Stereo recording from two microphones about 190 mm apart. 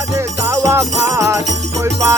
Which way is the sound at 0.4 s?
15° right (ahead or behind).